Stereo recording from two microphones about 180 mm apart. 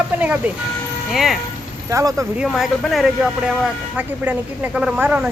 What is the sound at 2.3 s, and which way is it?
A man's voice, centre (ahead or behind).